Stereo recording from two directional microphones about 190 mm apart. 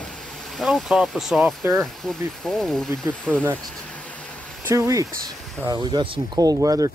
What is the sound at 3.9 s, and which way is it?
Vehicle, 5° left (ahead or behind).